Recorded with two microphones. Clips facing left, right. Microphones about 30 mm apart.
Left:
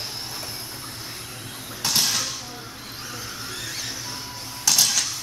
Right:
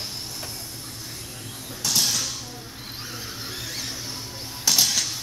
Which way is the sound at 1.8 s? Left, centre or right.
Left.